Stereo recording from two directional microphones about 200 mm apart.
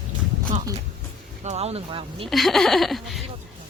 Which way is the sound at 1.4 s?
35° right (ahead or behind).